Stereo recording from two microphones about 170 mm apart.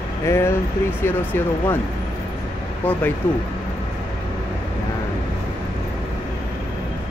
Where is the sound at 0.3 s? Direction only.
15° left (ahead or behind).